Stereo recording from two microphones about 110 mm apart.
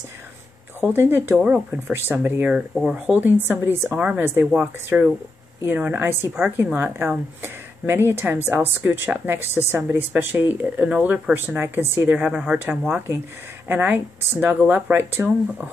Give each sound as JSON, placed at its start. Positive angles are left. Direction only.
{"t": 0.7, "sound": "a woman's voice", "side_deg": -20}
{"t": 2.5, "sound": "a woman's voice", "side_deg": -5}
{"t": 12.9, "sound": "a woman's voice", "side_deg": -20}